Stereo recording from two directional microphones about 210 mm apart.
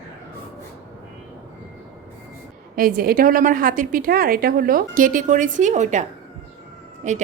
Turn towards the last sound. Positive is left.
turn(degrees=-35)  # may be behind; listen again after turning